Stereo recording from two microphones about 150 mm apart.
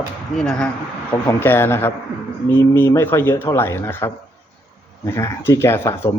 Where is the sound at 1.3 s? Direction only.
15° left (ahead or behind).